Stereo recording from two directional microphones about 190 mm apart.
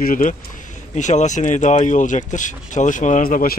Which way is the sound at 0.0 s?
45° left (ahead or behind).